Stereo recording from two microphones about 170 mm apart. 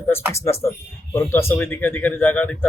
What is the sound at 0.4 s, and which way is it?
A man's voice, 15° left (ahead or behind).